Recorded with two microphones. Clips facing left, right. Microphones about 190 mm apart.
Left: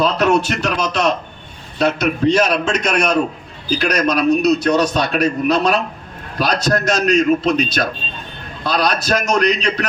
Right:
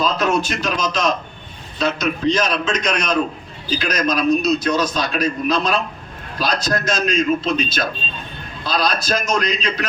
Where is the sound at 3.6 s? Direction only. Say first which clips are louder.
Left 3 dB; 65° left (ahead or behind).